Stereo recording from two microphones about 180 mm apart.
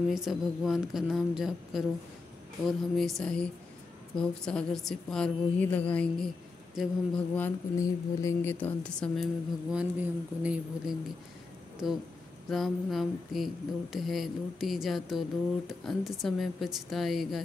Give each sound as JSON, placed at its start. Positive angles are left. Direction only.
{"t": 0.1, "sound": "mantra", "side_deg": 0}
{"t": 7.3, "sound": "mantra", "side_deg": 15}